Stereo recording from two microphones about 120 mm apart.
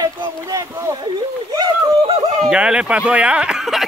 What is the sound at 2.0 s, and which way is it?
Yodeling, 70° right (ahead or behind).